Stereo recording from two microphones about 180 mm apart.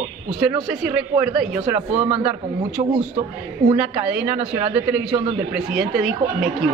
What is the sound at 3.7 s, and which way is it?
A man's voice, 10° right (ahead or behind).